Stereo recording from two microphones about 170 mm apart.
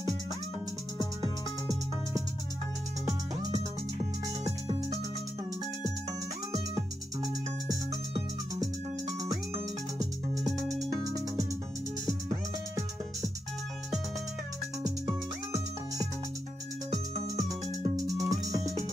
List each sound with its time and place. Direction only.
10.3 s music: centre (ahead or behind)
11.1 s music: 20° right (ahead or behind)
17.5 s music: 20° right (ahead or behind)